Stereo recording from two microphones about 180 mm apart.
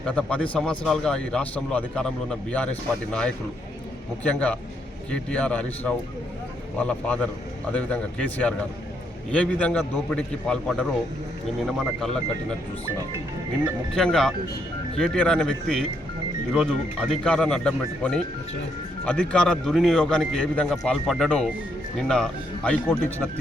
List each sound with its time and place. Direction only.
0.0 s a man's voice: 5° left (ahead or behind)
6.7 s a man's voice: 5° left (ahead or behind)
13.9 s speech: 5° left (ahead or behind)